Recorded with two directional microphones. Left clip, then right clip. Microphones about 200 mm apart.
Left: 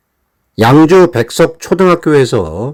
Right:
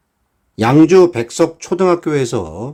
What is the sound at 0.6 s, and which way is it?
Speech, 25° left (ahead or behind).